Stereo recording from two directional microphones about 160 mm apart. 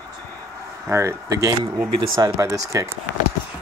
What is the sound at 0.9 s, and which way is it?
Speech, 15° right (ahead or behind).